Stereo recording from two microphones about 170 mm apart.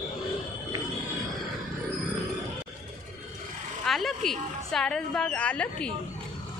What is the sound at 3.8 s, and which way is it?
A woman's voice, centre (ahead or behind).